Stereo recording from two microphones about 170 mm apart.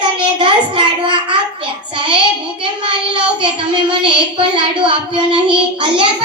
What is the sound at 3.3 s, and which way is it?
Child singing, 30° right (ahead or behind).